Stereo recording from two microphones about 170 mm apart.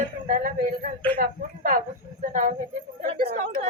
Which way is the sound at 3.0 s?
65° right (ahead or behind).